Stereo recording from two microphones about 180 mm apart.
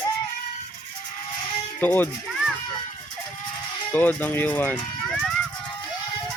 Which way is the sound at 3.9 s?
10° left (ahead or behind).